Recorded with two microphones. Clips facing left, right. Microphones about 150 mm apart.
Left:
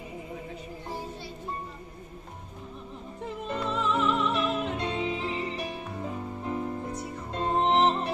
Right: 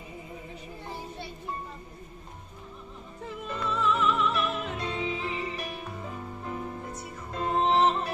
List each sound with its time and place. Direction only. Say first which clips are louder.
3.4 s music: right 1 dB; 25° left (ahead or behind)
6.5 s music: left 5 dB; centre (ahead or behind)
7.4 s music: even; 25° left (ahead or behind)